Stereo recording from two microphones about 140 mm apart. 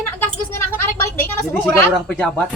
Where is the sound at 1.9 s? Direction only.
5° left (ahead or behind).